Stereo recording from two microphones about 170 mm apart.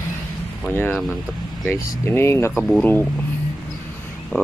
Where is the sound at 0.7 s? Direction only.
10° left (ahead or behind).